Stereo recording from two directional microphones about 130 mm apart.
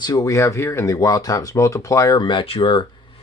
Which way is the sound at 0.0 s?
25° left (ahead or behind).